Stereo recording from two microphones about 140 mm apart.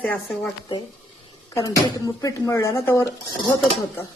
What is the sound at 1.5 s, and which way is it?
Speech, 25° left (ahead or behind).